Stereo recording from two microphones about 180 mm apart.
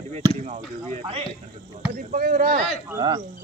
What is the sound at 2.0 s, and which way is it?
Speech, 45° right (ahead or behind).